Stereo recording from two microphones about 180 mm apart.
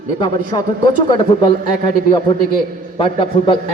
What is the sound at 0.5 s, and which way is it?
A man's voice, 25° left (ahead or behind).